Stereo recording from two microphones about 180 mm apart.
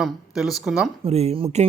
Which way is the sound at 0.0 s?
Centre (ahead or behind).